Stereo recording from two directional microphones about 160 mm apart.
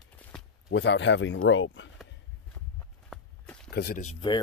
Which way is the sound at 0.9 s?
90° left.